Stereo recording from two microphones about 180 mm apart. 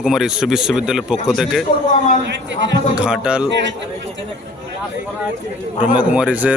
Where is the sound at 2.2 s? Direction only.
85° right.